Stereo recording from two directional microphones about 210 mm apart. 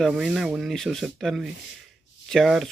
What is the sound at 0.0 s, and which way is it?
Speech, centre (ahead or behind).